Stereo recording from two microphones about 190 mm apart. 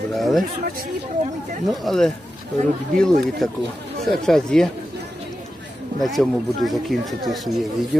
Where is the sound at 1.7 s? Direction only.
Centre (ahead or behind).